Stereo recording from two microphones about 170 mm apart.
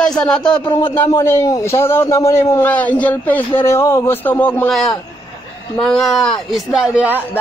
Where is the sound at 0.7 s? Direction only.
30° left (ahead or behind).